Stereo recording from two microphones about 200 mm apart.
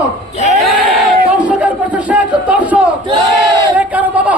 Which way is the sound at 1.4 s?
5° right (ahead or behind).